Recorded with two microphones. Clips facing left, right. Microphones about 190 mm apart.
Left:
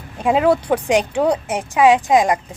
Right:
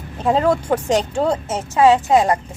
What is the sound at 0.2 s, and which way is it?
Speech, 10° left (ahead or behind).